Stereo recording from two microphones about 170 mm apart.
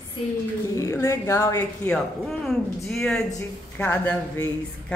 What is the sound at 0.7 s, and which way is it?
A woman's voice, 15° left (ahead or behind).